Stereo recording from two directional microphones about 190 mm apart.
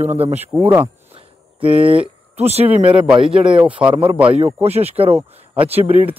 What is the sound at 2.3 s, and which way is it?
Speech, 35° right (ahead or behind).